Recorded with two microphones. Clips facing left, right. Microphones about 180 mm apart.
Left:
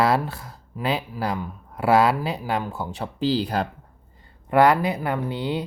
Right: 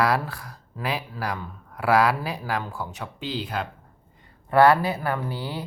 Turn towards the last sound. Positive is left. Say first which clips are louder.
# left 4 dB
turn(degrees=20)  # may be behind; listen again after turning